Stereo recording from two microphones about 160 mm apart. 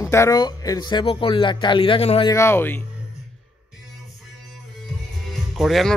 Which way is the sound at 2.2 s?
15° left (ahead or behind).